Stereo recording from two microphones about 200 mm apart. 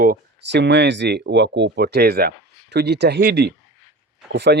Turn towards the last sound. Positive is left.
turn(degrees=-60)  # may be behind; listen again after turning